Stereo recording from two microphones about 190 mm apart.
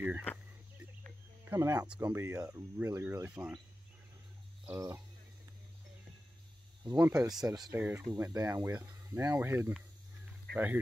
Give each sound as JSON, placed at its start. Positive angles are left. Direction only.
{"t": 1.4, "sound": "speech", "side_deg": -15}
{"t": 4.6, "sound": "speech", "side_deg": -15}
{"t": 6.8, "sound": "speech", "side_deg": -20}
{"t": 7.1, "sound": "speech", "side_deg": -5}
{"t": 7.4, "sound": "speech", "side_deg": -20}